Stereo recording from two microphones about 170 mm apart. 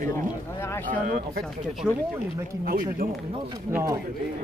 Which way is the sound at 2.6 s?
55° right (ahead or behind).